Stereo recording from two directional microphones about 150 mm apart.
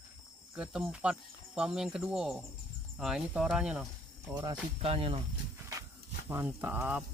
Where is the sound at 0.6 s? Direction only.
5° right (ahead or behind).